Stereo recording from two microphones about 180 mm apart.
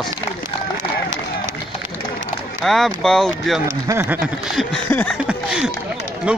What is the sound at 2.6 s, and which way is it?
Snicker, centre (ahead or behind).